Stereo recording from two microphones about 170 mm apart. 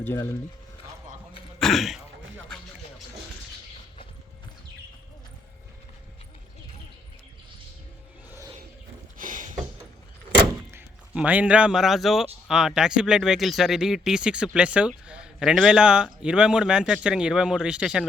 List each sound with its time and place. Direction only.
1.5 s speech: centre (ahead or behind)
9.1 s a sound: 50° right (ahead or behind)
10.3 s door: 10° right (ahead or behind)
12.5 s speech: 5° right (ahead or behind)